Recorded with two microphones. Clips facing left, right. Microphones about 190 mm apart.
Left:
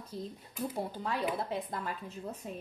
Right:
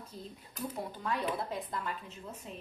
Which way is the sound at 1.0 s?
25° left (ahead or behind).